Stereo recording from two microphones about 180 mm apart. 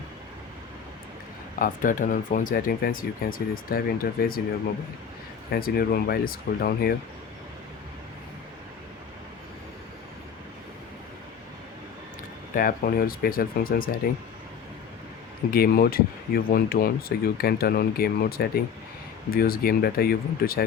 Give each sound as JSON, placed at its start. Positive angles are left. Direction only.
{"t": 1.5, "sound": "speech", "side_deg": 50}
{"t": 5.5, "sound": "speech", "side_deg": 55}
{"t": 12.5, "sound": "speech", "side_deg": 50}
{"t": 15.5, "sound": "speech", "side_deg": 55}